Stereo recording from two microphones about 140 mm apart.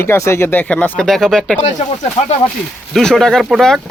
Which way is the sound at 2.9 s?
5° left (ahead or behind).